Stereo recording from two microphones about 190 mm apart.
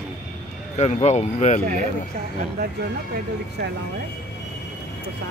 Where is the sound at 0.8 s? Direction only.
35° left (ahead or behind).